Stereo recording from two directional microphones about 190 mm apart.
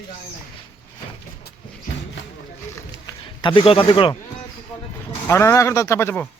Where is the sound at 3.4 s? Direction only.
25° left (ahead or behind).